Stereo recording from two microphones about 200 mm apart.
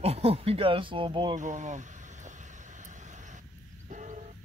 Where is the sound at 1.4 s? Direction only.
35° right (ahead or behind).